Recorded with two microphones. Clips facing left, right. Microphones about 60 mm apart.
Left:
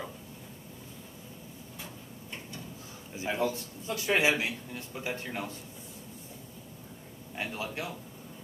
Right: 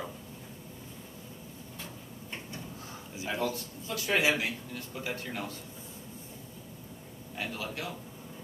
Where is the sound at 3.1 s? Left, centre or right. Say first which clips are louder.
Left 2 dB; left.